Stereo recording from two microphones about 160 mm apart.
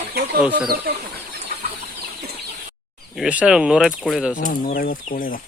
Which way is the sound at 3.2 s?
5° right (ahead or behind).